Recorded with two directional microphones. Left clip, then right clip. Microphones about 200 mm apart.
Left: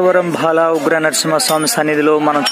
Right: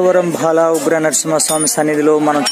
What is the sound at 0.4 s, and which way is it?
Speech, 5° right (ahead or behind).